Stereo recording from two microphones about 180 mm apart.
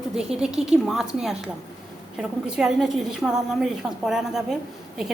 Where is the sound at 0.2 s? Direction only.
5° right (ahead or behind).